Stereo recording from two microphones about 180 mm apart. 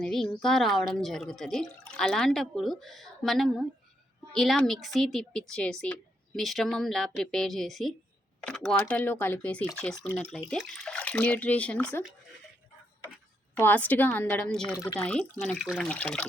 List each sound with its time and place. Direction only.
0.0 s a woman's voice: centre (ahead or behind)
13.6 s speech: 10° left (ahead or behind)
14.8 s speech: 15° left (ahead or behind)
15.0 s a woman's voice: 5° left (ahead or behind)